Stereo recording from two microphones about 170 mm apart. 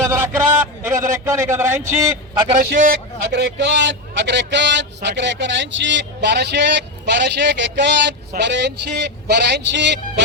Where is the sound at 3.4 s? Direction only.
90° right.